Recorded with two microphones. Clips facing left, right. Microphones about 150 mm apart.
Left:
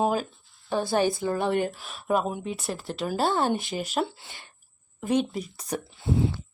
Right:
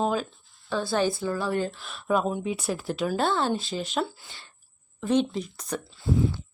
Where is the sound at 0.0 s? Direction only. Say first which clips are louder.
Left 1 dB; 10° left (ahead or behind).